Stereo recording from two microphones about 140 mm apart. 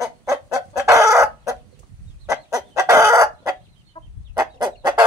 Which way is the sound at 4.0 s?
45° left (ahead or behind).